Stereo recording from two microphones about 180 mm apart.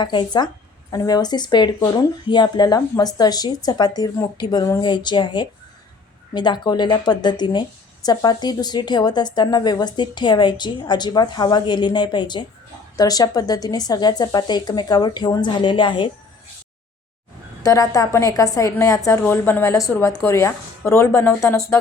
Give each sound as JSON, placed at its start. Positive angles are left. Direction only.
{"t": 0.0, "sound": "speech", "side_deg": 25}
{"t": 17.6, "sound": "a woman's voice", "side_deg": 20}